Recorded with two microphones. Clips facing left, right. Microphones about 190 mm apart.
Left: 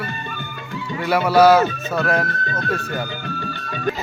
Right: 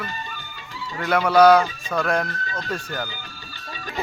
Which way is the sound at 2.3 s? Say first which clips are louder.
Left 5 dB; 55° left (ahead or behind).